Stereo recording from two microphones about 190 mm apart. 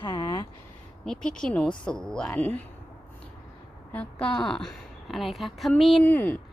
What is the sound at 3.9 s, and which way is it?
A woman's voice, 5° left (ahead or behind).